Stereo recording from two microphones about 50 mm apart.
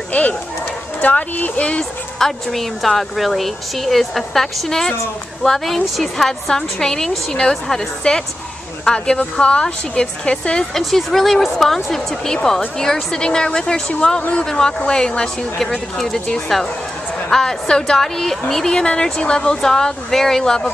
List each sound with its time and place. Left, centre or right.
0.1 s speech: left
1.0 s speech: left
1.4 s a woman's voice: left
2.1 s a woman's voice: centre
10.7 s a woman's voice: centre